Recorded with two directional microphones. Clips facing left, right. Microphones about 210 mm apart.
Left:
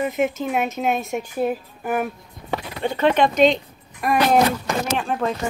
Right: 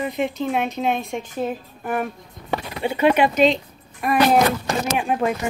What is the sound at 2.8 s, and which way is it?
Speech, 10° right (ahead or behind).